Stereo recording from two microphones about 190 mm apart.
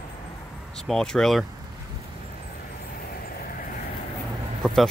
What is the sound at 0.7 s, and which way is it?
Speech, centre (ahead or behind).